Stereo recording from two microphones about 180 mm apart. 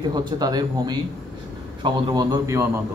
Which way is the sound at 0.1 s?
20° right (ahead or behind).